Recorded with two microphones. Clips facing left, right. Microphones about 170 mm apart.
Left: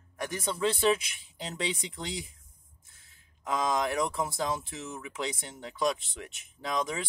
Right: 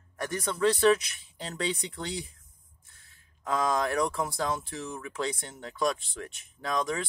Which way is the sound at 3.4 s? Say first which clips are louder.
Right 1 dB; 20° left (ahead or behind).